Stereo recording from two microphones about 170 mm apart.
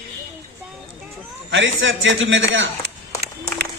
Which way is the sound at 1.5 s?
90° right.